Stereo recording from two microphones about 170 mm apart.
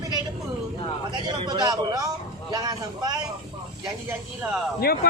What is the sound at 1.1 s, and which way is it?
A man's voice, 25° right (ahead or behind).